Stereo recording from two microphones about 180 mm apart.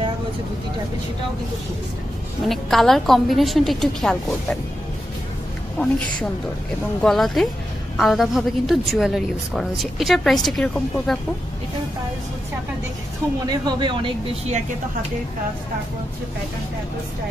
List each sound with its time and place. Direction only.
2.4 s a woman's voice: centre (ahead or behind)
7.0 s a woman's voice: centre (ahead or behind)
13.5 s speech: 25° right (ahead or behind)